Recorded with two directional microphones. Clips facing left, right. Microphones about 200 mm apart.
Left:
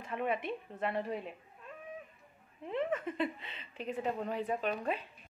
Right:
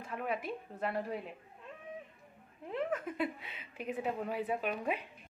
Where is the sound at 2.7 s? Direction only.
5° right (ahead or behind).